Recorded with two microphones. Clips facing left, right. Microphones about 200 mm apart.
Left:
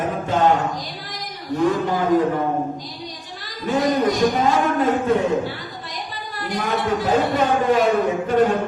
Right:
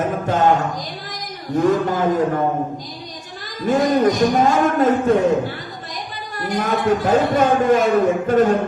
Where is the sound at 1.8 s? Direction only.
45° right (ahead or behind).